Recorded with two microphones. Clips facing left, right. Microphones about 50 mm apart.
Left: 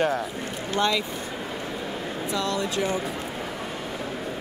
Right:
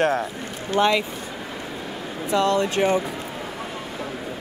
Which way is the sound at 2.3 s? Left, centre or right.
Right.